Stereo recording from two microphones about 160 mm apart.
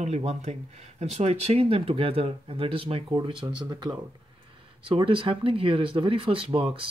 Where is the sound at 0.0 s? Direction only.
45° right (ahead or behind).